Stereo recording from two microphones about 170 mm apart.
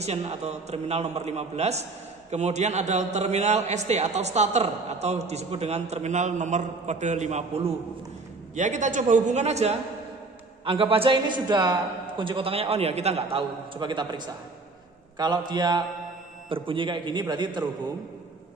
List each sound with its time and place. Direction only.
0.0 s a man's voice: 40° right (ahead or behind)